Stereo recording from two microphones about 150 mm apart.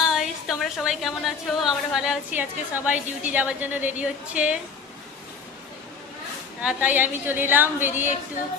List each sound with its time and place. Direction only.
0.0 s a woman's voice: centre (ahead or behind)
6.6 s a woman's voice: 10° right (ahead or behind)